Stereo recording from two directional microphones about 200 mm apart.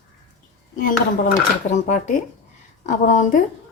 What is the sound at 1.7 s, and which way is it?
Speech, 40° left (ahead or behind).